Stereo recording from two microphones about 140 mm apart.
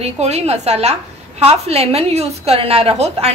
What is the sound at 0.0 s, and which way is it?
A woman's voice, 50° right (ahead or behind).